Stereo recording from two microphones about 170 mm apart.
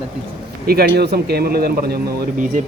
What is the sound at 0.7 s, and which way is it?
Speech, 70° right (ahead or behind).